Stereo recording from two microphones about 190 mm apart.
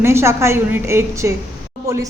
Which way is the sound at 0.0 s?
15° right (ahead or behind).